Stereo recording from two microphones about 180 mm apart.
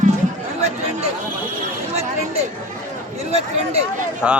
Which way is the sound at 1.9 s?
35° right (ahead or behind).